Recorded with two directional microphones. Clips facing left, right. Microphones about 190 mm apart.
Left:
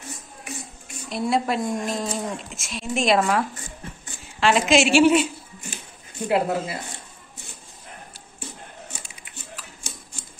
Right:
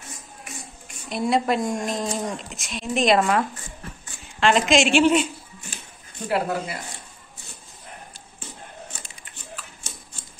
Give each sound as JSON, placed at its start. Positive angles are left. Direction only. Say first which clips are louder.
{"t": 1.1, "sound": "speech", "louder": "right 1 dB", "side_deg": 0}
{"t": 6.2, "sound": "speech", "louder": "left 2 dB", "side_deg": 20}